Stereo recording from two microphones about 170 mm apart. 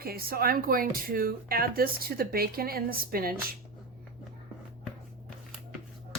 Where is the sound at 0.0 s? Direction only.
60° right (ahead or behind).